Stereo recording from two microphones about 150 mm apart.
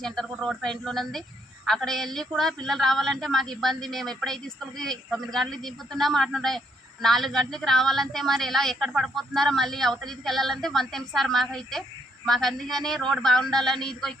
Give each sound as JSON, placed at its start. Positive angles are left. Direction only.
{"t": 0.0, "sound": "a woman's voice", "side_deg": 5}